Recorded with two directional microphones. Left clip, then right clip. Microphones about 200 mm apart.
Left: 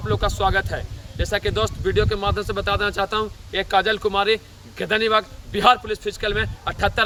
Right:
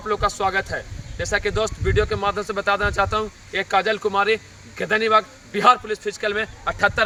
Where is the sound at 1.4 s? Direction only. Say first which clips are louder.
Even; 25° left (ahead or behind).